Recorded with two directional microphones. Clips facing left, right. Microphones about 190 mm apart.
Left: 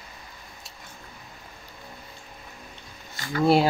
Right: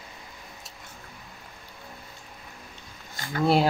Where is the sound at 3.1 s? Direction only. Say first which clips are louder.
Left 3 dB; 50° right (ahead or behind).